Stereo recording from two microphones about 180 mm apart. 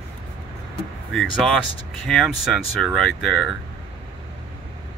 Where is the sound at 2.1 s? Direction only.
Centre (ahead or behind).